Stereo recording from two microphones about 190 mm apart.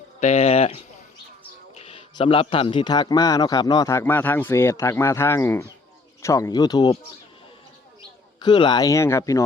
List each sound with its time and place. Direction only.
0.2 s speech: 35° left (ahead or behind); by 7.0 s 20° left (ahead or behind)
8.4 s speech: 25° left (ahead or behind)